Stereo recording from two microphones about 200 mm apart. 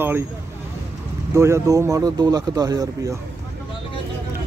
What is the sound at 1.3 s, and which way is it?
Speech, 15° right (ahead or behind).